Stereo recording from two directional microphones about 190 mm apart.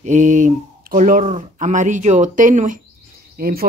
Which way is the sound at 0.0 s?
40° right (ahead or behind).